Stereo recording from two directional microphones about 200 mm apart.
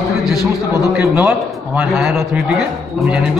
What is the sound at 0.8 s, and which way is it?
A man's voice, 5° right (ahead or behind).